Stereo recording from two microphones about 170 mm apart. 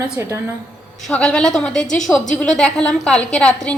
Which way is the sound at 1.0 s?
5° left (ahead or behind).